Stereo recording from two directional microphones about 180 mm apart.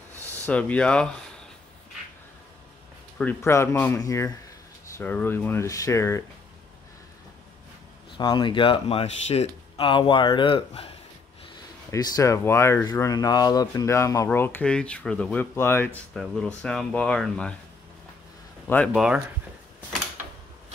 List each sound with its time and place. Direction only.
0.1 s speech: 10° left (ahead or behind)
3.2 s speech: 10° left (ahead or behind)
8.2 s speech: 25° left (ahead or behind)
11.9 s speech: 15° left (ahead or behind)
16.1 s speech: 5° left (ahead or behind)
18.9 s speech: 5° right (ahead or behind)